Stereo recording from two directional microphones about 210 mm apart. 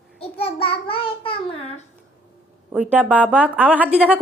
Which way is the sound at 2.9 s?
5° right (ahead or behind).